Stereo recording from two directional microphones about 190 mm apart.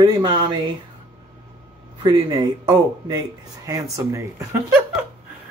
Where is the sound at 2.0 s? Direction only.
25° right (ahead or behind).